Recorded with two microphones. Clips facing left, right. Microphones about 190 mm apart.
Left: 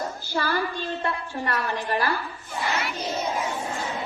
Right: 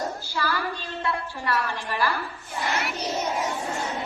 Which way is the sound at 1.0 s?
45° left (ahead or behind).